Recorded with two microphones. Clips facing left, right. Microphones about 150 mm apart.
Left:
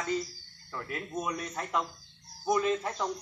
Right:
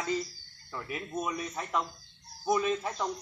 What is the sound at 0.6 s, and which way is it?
A man's voice, 10° right (ahead or behind).